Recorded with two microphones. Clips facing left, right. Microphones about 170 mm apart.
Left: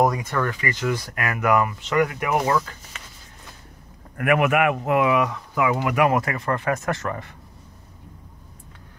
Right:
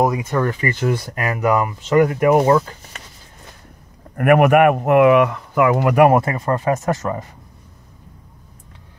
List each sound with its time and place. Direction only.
0.0 s speech: 20° right (ahead or behind)
1.8 s speech: 40° right (ahead or behind)
4.2 s speech: 50° right (ahead or behind)
6.0 s speech: 30° right (ahead or behind)